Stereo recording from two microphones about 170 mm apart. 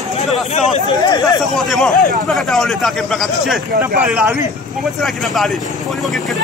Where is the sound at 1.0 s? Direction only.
25° left (ahead or behind).